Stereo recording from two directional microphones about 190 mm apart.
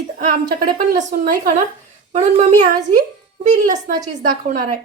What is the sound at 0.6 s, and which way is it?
Speech, 40° right (ahead or behind).